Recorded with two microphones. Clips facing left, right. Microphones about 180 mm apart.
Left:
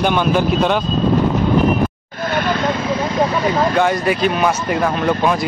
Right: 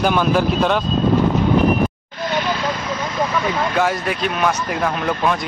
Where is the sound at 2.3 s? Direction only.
55° left (ahead or behind).